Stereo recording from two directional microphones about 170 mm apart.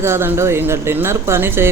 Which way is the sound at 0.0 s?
15° right (ahead or behind).